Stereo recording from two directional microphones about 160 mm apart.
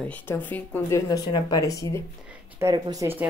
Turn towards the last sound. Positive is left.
turn(degrees=-15)  # may be behind; listen again after turning